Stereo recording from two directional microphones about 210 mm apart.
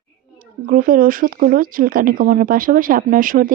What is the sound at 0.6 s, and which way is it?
Speech, 40° right (ahead or behind).